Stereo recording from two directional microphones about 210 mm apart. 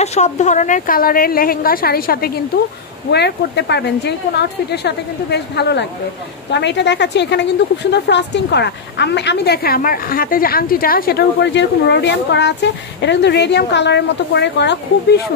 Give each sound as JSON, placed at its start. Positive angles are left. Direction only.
{"t": 0.0, "sound": "a woman's voice", "side_deg": 35}